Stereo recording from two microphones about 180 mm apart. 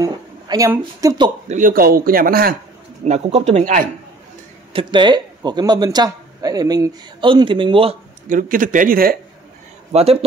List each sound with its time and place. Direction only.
0.0 s speech: 20° right (ahead or behind)
1.5 s a man's voice: 50° right (ahead or behind)
3.1 s speech: 35° right (ahead or behind)
4.7 s speech: 25° right (ahead or behind)
8.3 s a man's voice: 50° right (ahead or behind)